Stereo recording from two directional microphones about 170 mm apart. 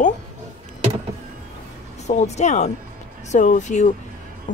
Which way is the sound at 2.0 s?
40° left (ahead or behind).